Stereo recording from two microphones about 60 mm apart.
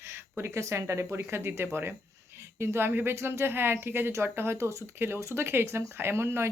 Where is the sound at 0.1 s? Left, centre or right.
Right.